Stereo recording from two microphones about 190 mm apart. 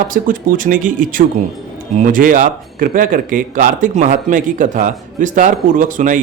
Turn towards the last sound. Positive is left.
turn(degrees=-45)  # may be behind; listen again after turning